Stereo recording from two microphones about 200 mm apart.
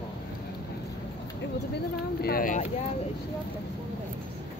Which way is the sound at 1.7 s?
50° left (ahead or behind).